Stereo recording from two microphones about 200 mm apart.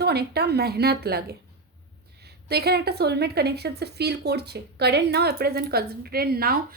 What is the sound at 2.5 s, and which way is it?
Speech, 55° right (ahead or behind).